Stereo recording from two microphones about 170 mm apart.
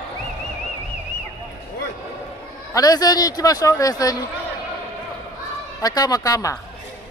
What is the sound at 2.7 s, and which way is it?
A man's voice, 20° left (ahead or behind).